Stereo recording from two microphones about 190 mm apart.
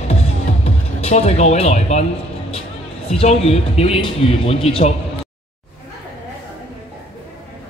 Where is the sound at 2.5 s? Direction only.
30° left (ahead or behind).